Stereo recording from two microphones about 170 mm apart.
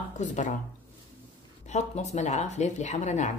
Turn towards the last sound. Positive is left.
turn(degrees=45)  # may be behind; listen again after turning